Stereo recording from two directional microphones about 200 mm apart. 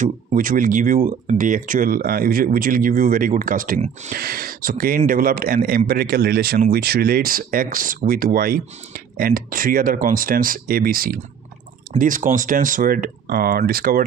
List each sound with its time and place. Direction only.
0.0 s speech: 40° right (ahead or behind)